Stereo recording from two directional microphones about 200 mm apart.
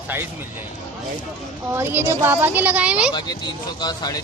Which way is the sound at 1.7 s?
10° right (ahead or behind).